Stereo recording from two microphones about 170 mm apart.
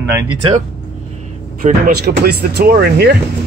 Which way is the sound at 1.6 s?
40° right (ahead or behind).